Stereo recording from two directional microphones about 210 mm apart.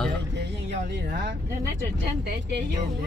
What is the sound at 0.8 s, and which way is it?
Speech, 50° right (ahead or behind).